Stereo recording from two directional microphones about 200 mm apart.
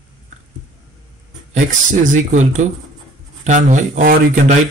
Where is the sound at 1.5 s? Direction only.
40° right (ahead or behind).